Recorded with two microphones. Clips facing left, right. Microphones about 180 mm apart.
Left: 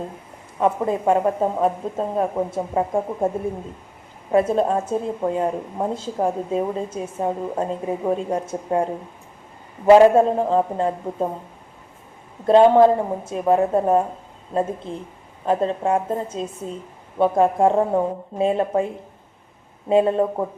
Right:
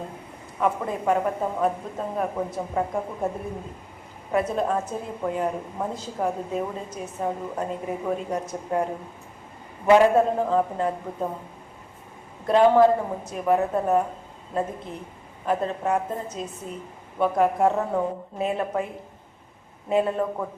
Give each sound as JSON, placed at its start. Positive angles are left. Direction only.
{"t": 0.6, "sound": "speech", "side_deg": 30}
{"t": 12.5, "sound": "speech", "side_deg": 30}
{"t": 19.9, "sound": "speech", "side_deg": 30}